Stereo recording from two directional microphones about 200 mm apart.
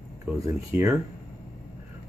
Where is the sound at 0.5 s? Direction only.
10° right (ahead or behind).